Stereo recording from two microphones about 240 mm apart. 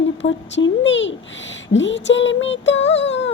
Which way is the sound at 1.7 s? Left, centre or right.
Left.